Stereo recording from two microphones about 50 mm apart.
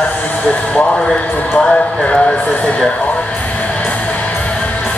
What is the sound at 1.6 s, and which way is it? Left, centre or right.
Speech, left.